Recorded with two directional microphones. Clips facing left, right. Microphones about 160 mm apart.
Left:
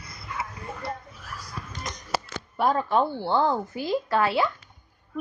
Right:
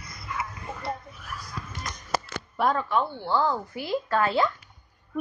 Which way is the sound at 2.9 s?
35° left (ahead or behind).